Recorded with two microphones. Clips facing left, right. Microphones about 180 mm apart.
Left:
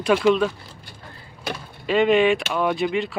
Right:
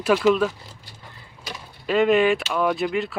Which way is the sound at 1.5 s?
55° left (ahead or behind).